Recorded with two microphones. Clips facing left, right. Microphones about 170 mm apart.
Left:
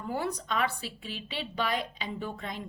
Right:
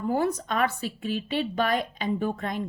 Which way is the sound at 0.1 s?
45° right (ahead or behind).